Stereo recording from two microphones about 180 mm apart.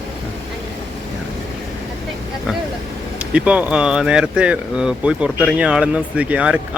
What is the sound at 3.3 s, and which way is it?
A man's voice, 5° right (ahead or behind).